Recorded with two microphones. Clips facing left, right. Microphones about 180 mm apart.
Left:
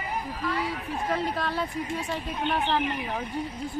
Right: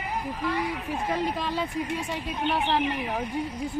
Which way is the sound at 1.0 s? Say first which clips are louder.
Even; 15° right (ahead or behind).